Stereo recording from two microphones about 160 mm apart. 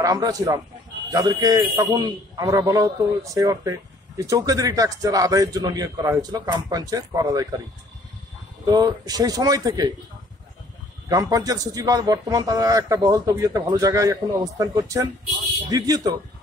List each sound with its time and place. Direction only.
0.0 s a man's voice: 25° right (ahead or behind)
8.6 s a man's voice: 25° right (ahead or behind)
11.1 s a man's voice: 20° right (ahead or behind)